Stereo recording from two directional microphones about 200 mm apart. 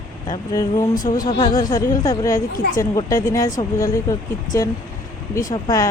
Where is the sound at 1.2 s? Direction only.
25° left (ahead or behind).